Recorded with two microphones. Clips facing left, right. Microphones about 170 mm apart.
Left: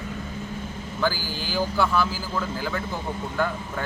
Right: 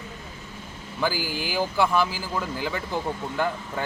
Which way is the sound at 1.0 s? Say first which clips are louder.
Even; 15° right (ahead or behind).